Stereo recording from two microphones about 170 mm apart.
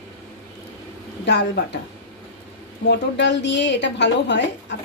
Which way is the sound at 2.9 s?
90° left.